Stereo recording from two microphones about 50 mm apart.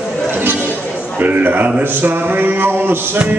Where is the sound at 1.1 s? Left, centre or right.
Right.